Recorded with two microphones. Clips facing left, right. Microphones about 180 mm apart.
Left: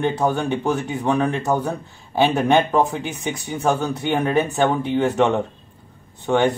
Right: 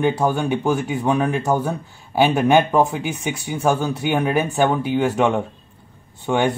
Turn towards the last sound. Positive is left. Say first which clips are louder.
# left 1 dB
turn(degrees=-10)  # may be behind; listen again after turning